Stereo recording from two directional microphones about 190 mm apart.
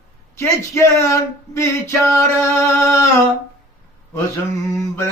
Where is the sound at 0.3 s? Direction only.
15° left (ahead or behind).